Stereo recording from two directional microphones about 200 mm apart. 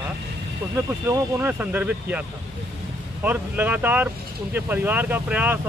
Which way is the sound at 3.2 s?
10° right (ahead or behind).